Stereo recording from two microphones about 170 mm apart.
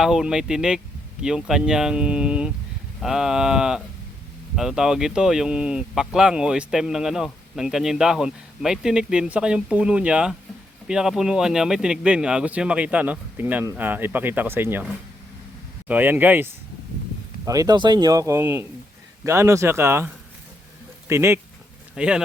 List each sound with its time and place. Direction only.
0.0 s speech: 5° right (ahead or behind)
15.9 s speech: 10° right (ahead or behind)
21.1 s speech: 15° right (ahead or behind)